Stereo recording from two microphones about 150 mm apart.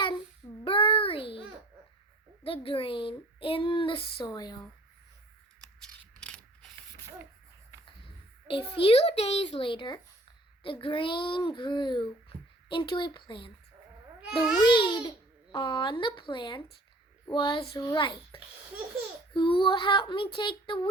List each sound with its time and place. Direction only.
0.6 s a sound: 40° left (ahead or behind)
2.4 s speech: 40° left (ahead or behind)
5.8 s a sound: 5° left (ahead or behind)
8.4 s speech: 35° left (ahead or behind)
14.2 s babbling: 5° right (ahead or behind)
14.6 s speech: 30° left (ahead or behind)
19.3 s speech: 35° left (ahead or behind)